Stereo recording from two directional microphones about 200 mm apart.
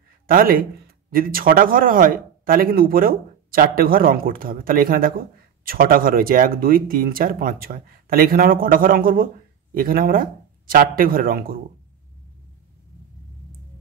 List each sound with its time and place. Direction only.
0.3 s speech: 45° right (ahead or behind)